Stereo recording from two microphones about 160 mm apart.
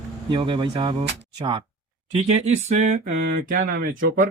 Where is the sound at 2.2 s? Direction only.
45° right (ahead or behind).